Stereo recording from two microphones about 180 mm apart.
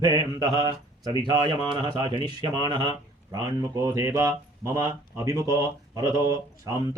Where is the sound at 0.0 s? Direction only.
25° right (ahead or behind).